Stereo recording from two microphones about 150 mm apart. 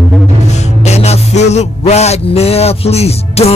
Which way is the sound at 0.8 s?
45° left (ahead or behind).